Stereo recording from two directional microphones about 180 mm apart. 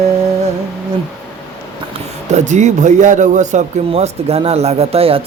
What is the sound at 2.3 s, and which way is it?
Speech, 40° right (ahead or behind).